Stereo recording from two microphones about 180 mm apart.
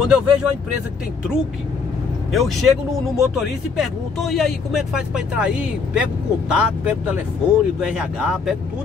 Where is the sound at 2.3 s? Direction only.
Centre (ahead or behind).